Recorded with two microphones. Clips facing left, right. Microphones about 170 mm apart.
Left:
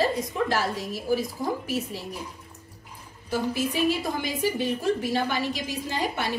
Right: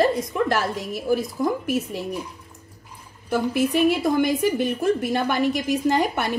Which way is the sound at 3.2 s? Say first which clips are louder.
Right 5 dB; 60° right (ahead or behind).